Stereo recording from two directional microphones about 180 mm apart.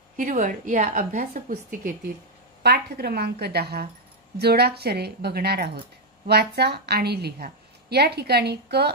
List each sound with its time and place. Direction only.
0.2 s a woman's voice: 45° right (ahead or behind)
2.6 s a woman's voice: 60° right (ahead or behind)